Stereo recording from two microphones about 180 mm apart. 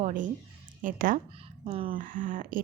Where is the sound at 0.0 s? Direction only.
45° right (ahead or behind).